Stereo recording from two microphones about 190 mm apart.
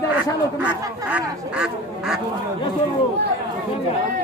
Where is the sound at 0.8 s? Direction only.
10° right (ahead or behind).